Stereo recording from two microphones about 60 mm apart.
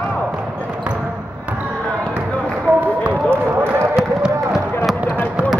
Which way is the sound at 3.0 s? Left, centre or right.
Right.